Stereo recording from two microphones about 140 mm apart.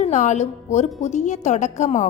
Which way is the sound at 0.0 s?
60° left (ahead or behind).